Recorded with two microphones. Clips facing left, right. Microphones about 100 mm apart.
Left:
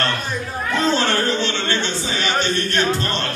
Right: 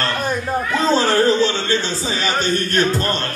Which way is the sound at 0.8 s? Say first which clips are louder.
Right 5 dB; 35° right (ahead or behind).